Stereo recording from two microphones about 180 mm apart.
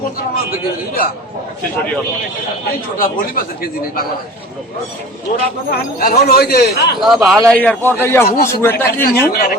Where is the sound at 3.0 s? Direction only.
55° left (ahead or behind).